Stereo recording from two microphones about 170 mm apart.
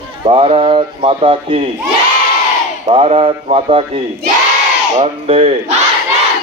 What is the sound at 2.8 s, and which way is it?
Speech, 35° right (ahead or behind).